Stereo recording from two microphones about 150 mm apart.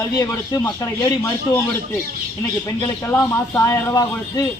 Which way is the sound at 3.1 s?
20° left (ahead or behind).